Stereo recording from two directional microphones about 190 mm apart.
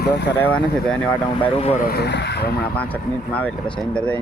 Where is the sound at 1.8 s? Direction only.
55° left (ahead or behind).